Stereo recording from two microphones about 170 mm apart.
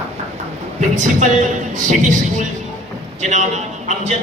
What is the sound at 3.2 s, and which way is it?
Speech, 45° right (ahead or behind).